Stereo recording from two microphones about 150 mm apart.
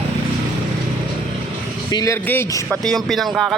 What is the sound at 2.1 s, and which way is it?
Speech, 15° left (ahead or behind).